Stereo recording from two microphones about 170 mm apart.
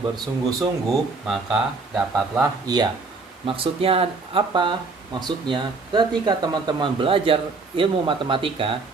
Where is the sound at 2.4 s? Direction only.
25° right (ahead or behind).